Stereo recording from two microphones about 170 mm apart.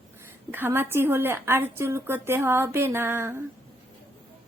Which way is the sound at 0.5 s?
10° right (ahead or behind).